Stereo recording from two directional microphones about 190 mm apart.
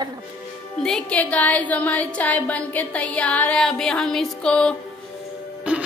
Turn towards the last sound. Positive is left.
turn(degrees=-5)  # may be behind; listen again after turning